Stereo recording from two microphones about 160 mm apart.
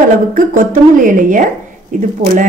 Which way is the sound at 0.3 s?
55° right (ahead or behind).